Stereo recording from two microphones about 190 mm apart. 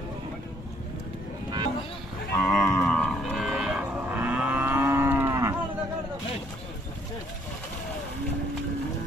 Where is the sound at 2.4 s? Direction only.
5° left (ahead or behind); by 5.5 s 15° right (ahead or behind).